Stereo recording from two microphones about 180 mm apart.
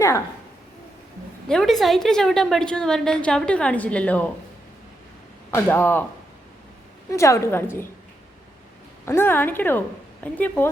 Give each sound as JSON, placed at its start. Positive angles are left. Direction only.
{"t": 1.5, "sound": "a woman's voice", "side_deg": 0}
{"t": 5.5, "sound": "a woman's voice", "side_deg": 10}
{"t": 7.1, "sound": "a woman's voice", "side_deg": 15}
{"t": 9.0, "sound": "a woman's voice", "side_deg": 10}